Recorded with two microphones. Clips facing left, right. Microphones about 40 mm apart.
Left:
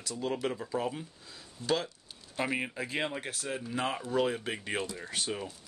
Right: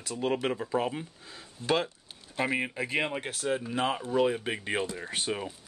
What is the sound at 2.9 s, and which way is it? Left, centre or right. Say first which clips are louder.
Speech: right 4 dB; right.